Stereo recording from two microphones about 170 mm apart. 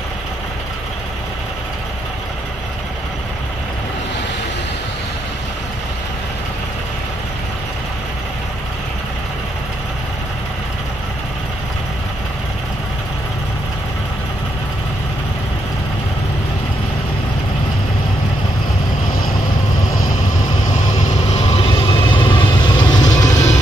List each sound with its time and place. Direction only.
19.9 s vehicle: 55° left (ahead or behind)
21.4 s vehicle: 35° left (ahead or behind)
23.0 s vehicle: 45° left (ahead or behind)